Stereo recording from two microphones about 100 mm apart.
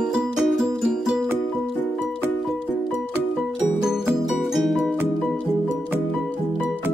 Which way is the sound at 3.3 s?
5° right (ahead or behind).